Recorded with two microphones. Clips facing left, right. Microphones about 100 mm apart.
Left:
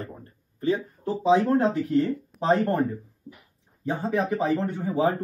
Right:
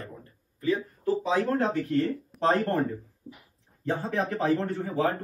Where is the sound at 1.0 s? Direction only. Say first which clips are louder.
Left 6 dB; 30° left (ahead or behind).